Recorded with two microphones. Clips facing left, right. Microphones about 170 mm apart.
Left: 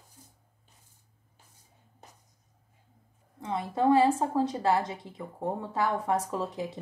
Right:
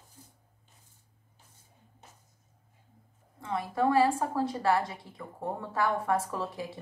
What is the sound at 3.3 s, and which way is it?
A woman's voice, 20° left (ahead or behind).